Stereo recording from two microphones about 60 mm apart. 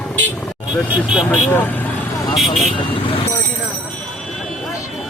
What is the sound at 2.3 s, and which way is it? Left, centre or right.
Speech, centre.